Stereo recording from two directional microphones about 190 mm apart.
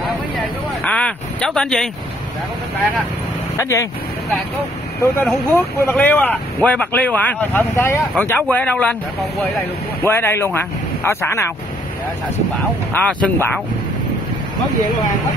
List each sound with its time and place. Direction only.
0.8 s speech: 5° left (ahead or behind)
3.5 s speech: 15° left (ahead or behind)
5.2 s speech: 5° left (ahead or behind)
10.0 s speech: 10° left (ahead or behind)
13.0 s speech: 5° left (ahead or behind)